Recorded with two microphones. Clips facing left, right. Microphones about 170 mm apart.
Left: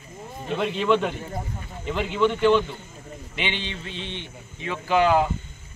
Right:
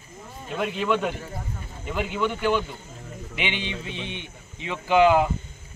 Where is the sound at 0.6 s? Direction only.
10° right (ahead or behind).